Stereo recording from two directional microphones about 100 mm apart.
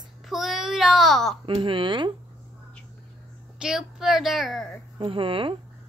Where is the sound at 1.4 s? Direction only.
60° right (ahead or behind).